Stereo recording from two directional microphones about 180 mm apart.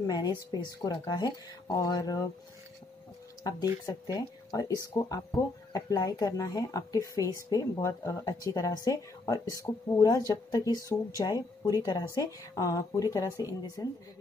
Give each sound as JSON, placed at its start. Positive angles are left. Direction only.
{"t": 0.0, "sound": "speech", "side_deg": 20}
{"t": 3.4, "sound": "speech", "side_deg": 20}